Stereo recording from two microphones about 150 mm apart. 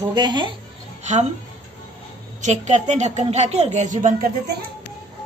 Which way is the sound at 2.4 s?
50° right (ahead or behind).